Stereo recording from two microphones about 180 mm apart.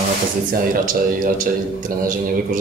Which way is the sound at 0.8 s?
50° right (ahead or behind).